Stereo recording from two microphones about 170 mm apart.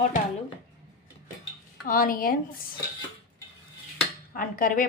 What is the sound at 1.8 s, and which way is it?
Speech, 55° left (ahead or behind).